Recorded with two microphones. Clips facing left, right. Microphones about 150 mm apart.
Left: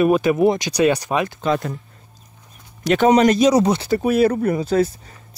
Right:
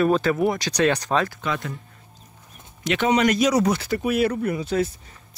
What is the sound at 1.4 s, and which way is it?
Speech, 35° left (ahead or behind).